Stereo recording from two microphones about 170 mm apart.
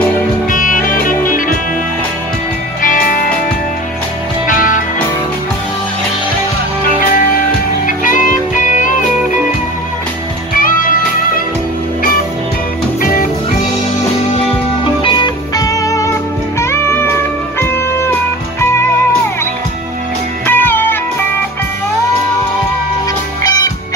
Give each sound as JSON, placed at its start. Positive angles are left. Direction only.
{"t": 0.5, "sound": "music", "side_deg": 50}
{"t": 2.8, "sound": "music", "side_deg": 50}
{"t": 4.5, "sound": "music", "side_deg": 50}
{"t": 7.8, "sound": "music", "side_deg": 50}
{"t": 10.6, "sound": "music", "side_deg": 55}
{"t": 13.0, "sound": "music", "side_deg": 55}
{"t": 15.0, "sound": "music", "side_deg": 25}
{"t": 20.4, "sound": "music", "side_deg": 10}
{"t": 23.4, "sound": "music", "side_deg": 20}